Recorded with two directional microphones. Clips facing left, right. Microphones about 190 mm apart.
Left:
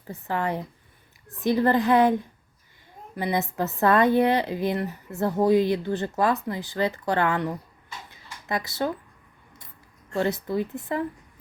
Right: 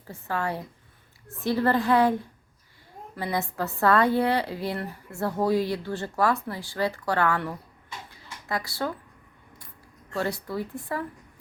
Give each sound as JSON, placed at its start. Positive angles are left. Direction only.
{"t": 0.1, "sound": "a woman's voice", "side_deg": 20}
{"t": 8.1, "sound": "a sound", "side_deg": 20}
{"t": 10.2, "sound": "speech", "side_deg": 20}